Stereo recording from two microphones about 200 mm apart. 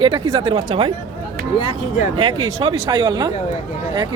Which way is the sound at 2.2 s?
25° right (ahead or behind).